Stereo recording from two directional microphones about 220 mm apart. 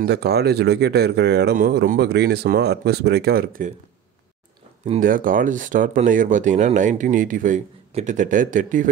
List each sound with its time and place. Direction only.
0.0 s speech: 50° right (ahead or behind)
4.8 s speech: 35° right (ahead or behind)